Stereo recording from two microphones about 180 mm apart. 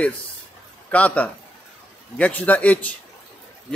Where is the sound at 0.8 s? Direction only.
10° left (ahead or behind).